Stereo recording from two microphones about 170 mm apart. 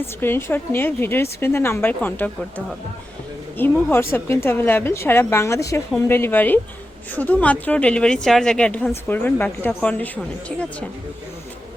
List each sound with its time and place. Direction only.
0.0 s a woman's voice: 15° left (ahead or behind)
3.6 s a woman's voice: 10° left (ahead or behind)